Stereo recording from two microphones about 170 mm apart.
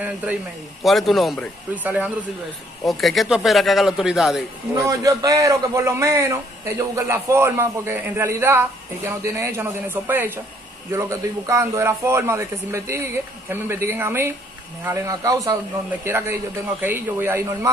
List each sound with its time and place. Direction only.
0.0 s a man's voice: 10° right (ahead or behind)
4.8 s a man's voice: 20° right (ahead or behind)